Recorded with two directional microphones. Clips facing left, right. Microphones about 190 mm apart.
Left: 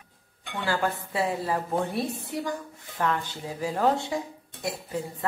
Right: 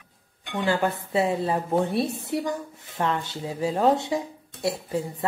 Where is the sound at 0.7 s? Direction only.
20° right (ahead or behind).